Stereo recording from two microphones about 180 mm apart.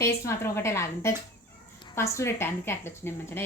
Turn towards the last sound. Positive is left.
turn(degrees=15)  # may be behind; listen again after turning